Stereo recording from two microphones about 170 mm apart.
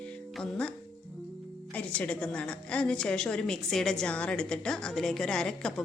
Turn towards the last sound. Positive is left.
turn(degrees=5)  # may be behind; listen again after turning